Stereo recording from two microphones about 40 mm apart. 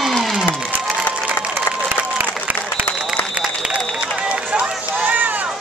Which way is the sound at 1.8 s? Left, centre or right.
Right.